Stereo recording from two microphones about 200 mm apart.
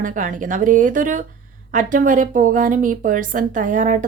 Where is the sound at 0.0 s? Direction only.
40° right (ahead or behind).